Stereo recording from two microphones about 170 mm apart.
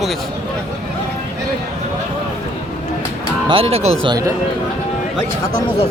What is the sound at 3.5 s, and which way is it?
Speech, 35° right (ahead or behind).